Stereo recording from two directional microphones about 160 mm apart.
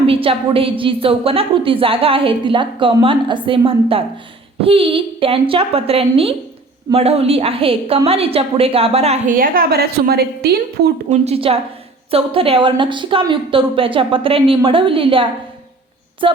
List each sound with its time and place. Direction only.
0.0 s a woman's voice: 35° right (ahead or behind)
9.3 s a woman's voice: 65° right (ahead or behind); by 10.8 s 80° right
11.1 s a woman's voice: 40° right (ahead or behind)